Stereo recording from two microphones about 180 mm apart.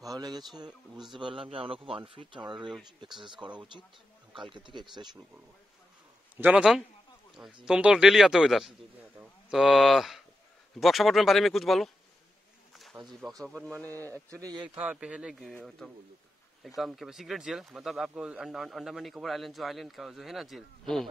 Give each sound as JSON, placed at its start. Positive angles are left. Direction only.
{"t": 0.0, "sound": "speech", "side_deg": -20}
{"t": 6.3, "sound": "speech", "side_deg": -10}
{"t": 12.7, "sound": "a sound", "side_deg": 0}
{"t": 13.5, "sound": "speech", "side_deg": 5}
{"t": 14.3, "sound": "speech", "side_deg": -20}
{"t": 14.8, "sound": "speech", "side_deg": -5}